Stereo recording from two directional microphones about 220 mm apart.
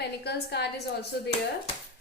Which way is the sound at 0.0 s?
50° left (ahead or behind).